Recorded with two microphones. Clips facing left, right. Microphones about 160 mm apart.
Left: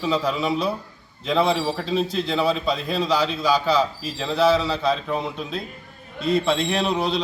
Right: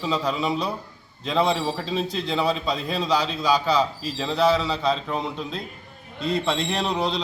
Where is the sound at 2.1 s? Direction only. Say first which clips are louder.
Left 2 dB; 15° right (ahead or behind).